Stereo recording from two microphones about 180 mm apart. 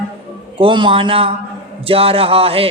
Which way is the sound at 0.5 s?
30° right (ahead or behind).